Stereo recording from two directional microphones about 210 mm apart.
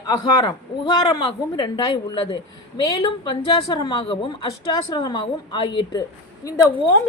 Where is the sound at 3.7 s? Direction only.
20° left (ahead or behind).